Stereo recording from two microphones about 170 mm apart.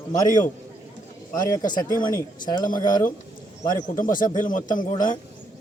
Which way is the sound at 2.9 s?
55° left (ahead or behind).